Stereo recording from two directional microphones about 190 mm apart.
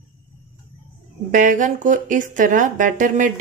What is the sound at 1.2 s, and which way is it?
Speech, 45° right (ahead or behind).